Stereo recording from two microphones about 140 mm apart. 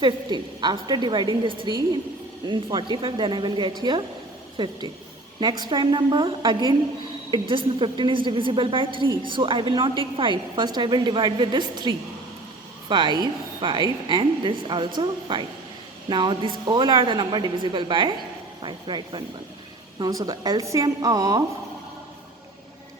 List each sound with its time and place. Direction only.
0.0 s a woman's voice: 30° right (ahead or behind)